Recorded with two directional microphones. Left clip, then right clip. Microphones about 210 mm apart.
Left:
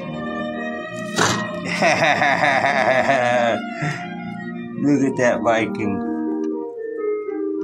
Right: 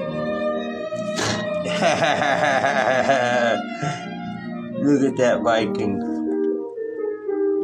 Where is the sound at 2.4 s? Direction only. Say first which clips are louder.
Left 2 dB; 15° left (ahead or behind).